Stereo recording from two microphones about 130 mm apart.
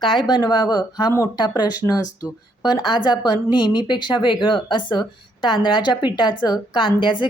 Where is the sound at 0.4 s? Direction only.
35° left (ahead or behind).